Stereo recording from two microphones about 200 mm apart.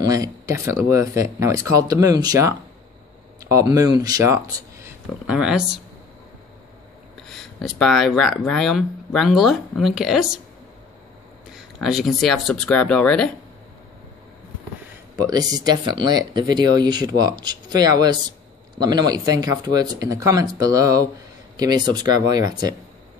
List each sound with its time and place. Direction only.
0.0 s speech: 15° right (ahead or behind)
5.2 s speech: 5° right (ahead or behind)
7.2 s speech: centre (ahead or behind)
11.5 s speech: centre (ahead or behind)
15.1 s speech: 20° right (ahead or behind)